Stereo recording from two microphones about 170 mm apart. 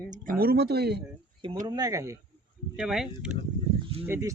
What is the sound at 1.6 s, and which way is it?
Speech, 25° right (ahead or behind).